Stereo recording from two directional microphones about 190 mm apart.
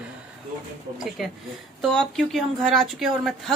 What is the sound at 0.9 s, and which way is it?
A woman's voice, centre (ahead or behind).